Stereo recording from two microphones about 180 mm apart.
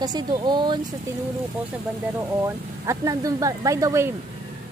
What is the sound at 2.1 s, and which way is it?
Speech, 15° right (ahead or behind).